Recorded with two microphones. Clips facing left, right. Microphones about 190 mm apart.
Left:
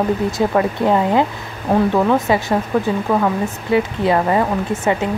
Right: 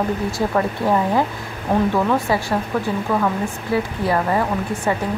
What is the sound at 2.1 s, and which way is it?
A woman's voice, 20° left (ahead or behind).